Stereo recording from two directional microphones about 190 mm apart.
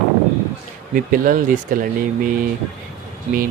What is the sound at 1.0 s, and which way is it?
Speech, 45° right (ahead or behind).